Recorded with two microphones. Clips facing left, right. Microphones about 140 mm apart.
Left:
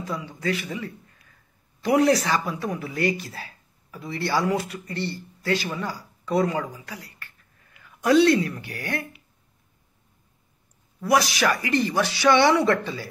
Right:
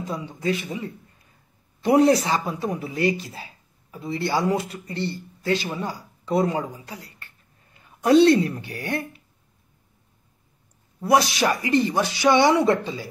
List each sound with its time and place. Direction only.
0.0 s speech: 20° right (ahead or behind)
11.0 s speech: 25° right (ahead or behind)